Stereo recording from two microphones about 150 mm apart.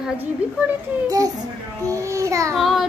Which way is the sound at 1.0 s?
25° right (ahead or behind).